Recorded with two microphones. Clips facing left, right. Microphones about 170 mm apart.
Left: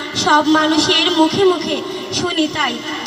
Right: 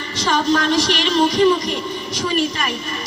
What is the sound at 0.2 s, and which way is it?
A woman's voice, 90° left.